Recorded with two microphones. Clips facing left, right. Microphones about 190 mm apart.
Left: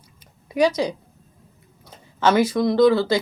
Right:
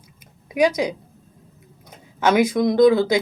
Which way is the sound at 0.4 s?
15° right (ahead or behind).